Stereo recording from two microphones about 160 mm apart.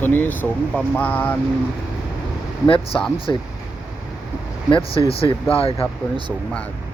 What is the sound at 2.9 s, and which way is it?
Speech, 5° left (ahead or behind).